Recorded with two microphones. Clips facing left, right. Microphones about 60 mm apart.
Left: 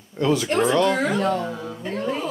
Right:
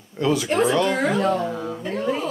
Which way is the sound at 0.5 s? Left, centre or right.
Centre.